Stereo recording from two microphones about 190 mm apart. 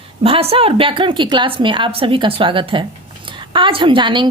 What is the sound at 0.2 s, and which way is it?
A woman's voice, 30° right (ahead or behind).